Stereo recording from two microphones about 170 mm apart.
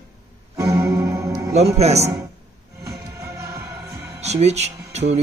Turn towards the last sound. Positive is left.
turn(degrees=-40)  # may be behind; listen again after turning